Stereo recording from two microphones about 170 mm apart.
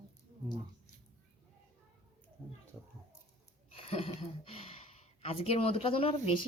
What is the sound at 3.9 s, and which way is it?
Speech, 35° left (ahead or behind).